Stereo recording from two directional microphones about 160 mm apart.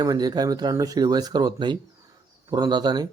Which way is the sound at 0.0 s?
25° right (ahead or behind).